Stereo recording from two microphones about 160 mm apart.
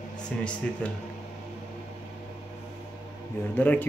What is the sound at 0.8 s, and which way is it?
Speech, 10° left (ahead or behind).